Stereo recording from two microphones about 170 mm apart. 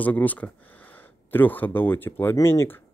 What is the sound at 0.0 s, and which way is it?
Speech, 10° left (ahead or behind).